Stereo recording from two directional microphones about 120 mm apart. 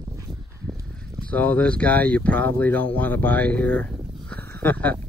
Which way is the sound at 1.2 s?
15° left (ahead or behind).